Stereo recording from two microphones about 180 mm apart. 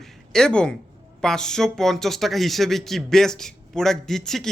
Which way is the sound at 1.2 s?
5° left (ahead or behind).